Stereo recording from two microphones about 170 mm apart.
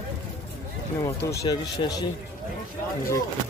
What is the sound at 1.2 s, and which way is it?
Speech, 25° left (ahead or behind).